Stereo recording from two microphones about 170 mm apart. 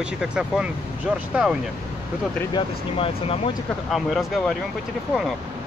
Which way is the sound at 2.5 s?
35° left (ahead or behind).